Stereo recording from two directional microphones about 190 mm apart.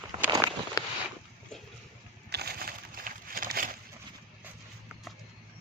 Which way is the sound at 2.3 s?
55° right (ahead or behind).